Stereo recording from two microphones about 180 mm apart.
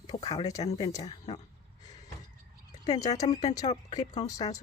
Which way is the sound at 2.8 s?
20° left (ahead or behind).